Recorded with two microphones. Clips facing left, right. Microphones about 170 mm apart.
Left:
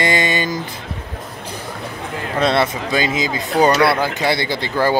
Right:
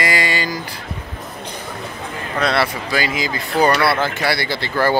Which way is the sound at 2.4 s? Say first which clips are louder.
Left 2 dB; 20° left (ahead or behind).